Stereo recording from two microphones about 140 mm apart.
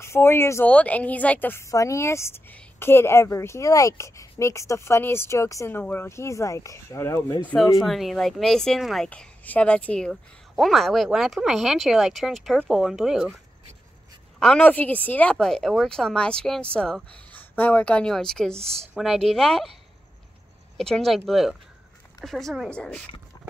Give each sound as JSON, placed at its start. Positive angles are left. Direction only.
{"t": 0.0, "sound": "a woman's voice", "side_deg": 20}
{"t": 7.8, "sound": "speech", "side_deg": 0}
{"t": 14.4, "sound": "speech", "side_deg": 5}
{"t": 18.6, "sound": "speech", "side_deg": -45}
{"t": 18.9, "sound": "speech", "side_deg": 0}
{"t": 20.7, "sound": "speech", "side_deg": 5}